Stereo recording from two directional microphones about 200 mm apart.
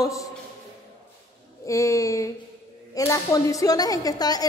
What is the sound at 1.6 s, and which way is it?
A man's voice, 15° left (ahead or behind).